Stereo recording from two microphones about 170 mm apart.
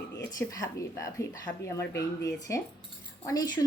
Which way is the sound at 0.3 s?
20° left (ahead or behind).